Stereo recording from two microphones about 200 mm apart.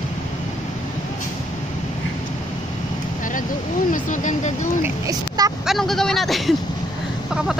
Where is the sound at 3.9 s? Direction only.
40° left (ahead or behind).